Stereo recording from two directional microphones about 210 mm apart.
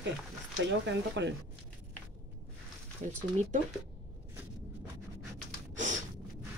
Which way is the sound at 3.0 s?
30° right (ahead or behind).